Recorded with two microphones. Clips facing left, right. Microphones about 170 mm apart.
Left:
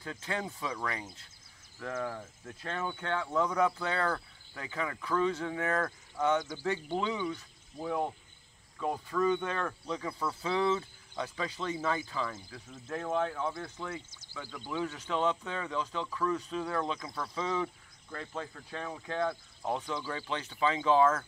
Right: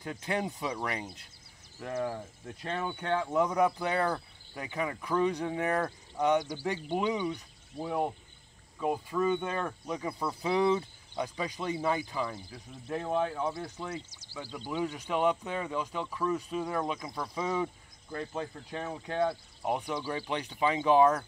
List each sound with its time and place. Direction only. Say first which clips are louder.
0.0 s speech: right 4 dB; 20° right (ahead or behind)
1.8 s speech: right 3 dB; 30° right (ahead or behind)